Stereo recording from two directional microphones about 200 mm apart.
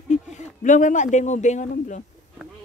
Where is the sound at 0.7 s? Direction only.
40° left (ahead or behind).